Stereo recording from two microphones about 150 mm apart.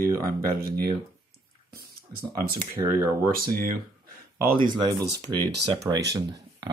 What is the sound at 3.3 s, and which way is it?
Speech, 75° right (ahead or behind).